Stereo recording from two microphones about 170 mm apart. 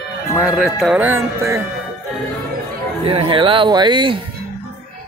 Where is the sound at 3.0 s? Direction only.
35° right (ahead or behind).